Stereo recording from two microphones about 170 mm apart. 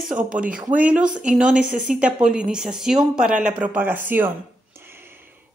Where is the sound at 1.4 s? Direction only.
5° right (ahead or behind).